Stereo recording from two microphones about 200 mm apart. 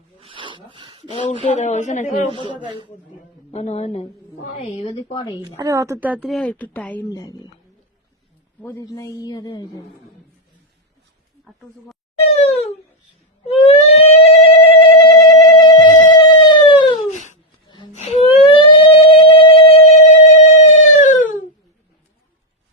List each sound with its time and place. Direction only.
0.2 s a sound: 25° right (ahead or behind)
1.1 s a woman's voice: 30° left (ahead or behind)
2.6 s speech: 25° right (ahead or behind)
3.5 s a woman's voice: 35° left (ahead or behind)
5.5 s a woman's voice: 15° right (ahead or behind); by 7.5 s 20° left (ahead or behind)
8.6 s a man's voice: 15° left (ahead or behind)
12.2 s a sound: 30° left (ahead or behind)
16.1 s howl: 20° left (ahead or behind)
17.1 s a sound: 40° left (ahead or behind)